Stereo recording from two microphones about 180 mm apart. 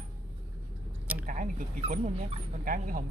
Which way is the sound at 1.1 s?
45° right (ahead or behind).